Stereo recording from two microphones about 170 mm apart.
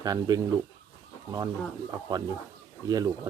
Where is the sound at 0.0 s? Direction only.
20° right (ahead or behind).